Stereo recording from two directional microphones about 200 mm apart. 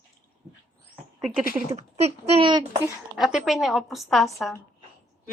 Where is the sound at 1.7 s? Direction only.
30° right (ahead or behind).